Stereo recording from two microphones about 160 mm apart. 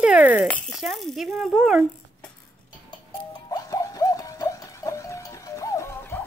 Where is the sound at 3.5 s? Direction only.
20° left (ahead or behind).